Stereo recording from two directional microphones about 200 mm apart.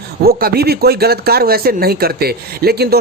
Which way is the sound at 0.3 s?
50° right (ahead or behind).